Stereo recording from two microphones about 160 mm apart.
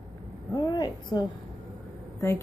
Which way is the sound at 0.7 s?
25° left (ahead or behind).